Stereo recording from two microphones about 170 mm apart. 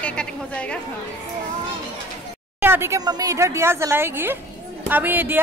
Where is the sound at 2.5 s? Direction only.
15° right (ahead or behind).